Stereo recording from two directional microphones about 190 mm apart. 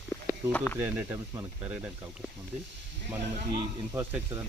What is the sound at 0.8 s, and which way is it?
Speech, 10° right (ahead or behind).